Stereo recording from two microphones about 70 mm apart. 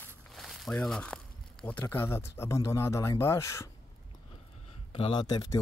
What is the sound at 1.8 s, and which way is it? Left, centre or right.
Speech, left.